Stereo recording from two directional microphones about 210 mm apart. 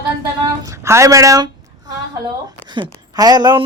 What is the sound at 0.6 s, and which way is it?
A woman's voice, 15° right (ahead or behind).